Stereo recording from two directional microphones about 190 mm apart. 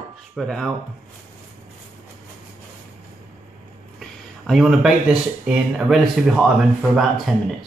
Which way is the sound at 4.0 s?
Centre (ahead or behind).